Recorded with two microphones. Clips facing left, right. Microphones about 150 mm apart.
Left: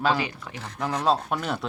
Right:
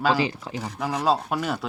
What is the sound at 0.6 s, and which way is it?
Speech, 5° right (ahead or behind).